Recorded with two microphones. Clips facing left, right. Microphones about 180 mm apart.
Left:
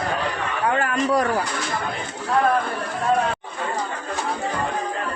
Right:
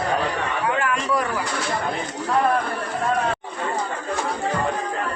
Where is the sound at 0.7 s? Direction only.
40° left (ahead or behind).